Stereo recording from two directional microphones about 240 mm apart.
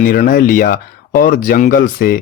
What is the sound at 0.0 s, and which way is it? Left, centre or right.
Speech, left.